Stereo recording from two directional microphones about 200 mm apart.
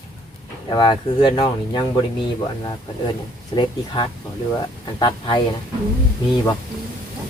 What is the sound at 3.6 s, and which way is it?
Speech, 25° left (ahead or behind).